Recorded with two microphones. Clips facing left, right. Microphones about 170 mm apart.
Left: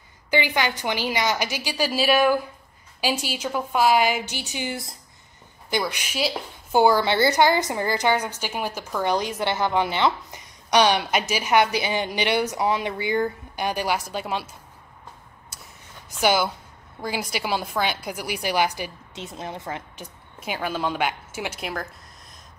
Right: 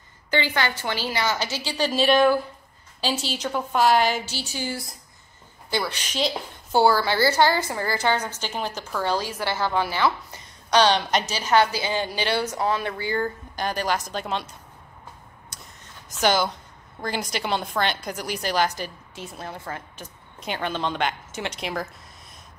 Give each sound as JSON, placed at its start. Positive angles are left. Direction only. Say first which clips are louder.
{"t": 0.3, "sound": "a woman's voice", "louder": "left 1 dB", "side_deg": 15}
{"t": 15.5, "sound": "a sound", "louder": "left 2 dB", "side_deg": 10}
{"t": 17.0, "sound": "a woman's voice", "louder": "even", "side_deg": 5}
{"t": 20.3, "sound": "a woman's voice", "louder": "even", "side_deg": 5}